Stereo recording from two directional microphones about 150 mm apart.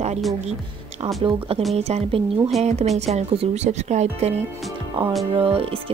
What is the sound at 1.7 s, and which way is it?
Speech, 45° right (ahead or behind).